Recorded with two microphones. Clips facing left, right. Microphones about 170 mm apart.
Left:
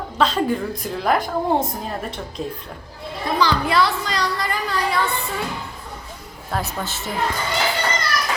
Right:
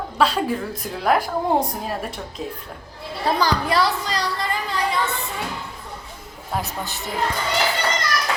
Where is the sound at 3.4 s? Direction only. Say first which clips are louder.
Left 3 dB; 40° right (ahead or behind).